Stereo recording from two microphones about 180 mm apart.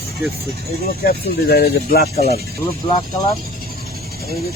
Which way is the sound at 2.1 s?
35° left (ahead or behind).